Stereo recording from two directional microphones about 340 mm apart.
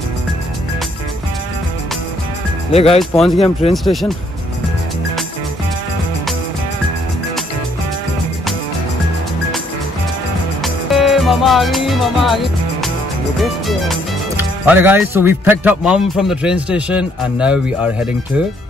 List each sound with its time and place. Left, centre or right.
2.7 s speech: centre
3.0 s speech: centre
10.6 s music: centre
13.4 s speech: centre